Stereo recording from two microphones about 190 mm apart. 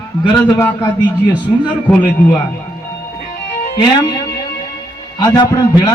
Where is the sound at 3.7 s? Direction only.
25° left (ahead or behind).